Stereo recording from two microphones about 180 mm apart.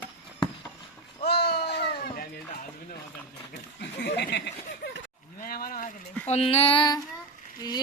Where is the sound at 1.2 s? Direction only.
65° left (ahead or behind).